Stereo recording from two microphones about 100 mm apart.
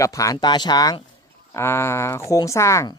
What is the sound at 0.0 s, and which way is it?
Speech, 35° left (ahead or behind).